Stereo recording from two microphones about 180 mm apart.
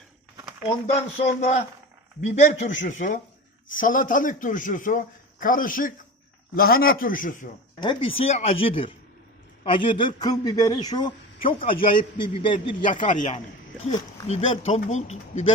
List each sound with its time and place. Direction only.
0.6 s speech: 35° left (ahead or behind)
1.4 s a man's voice: 50° left (ahead or behind)
7.8 s a man's voice: 25° left (ahead or behind)
12.9 s a man's voice: 45° left (ahead or behind)